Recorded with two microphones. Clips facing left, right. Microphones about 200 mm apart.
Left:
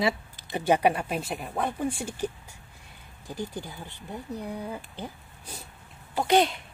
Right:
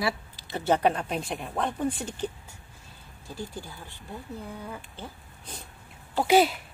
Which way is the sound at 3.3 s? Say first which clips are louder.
Left 3 dB; 15° left (ahead or behind).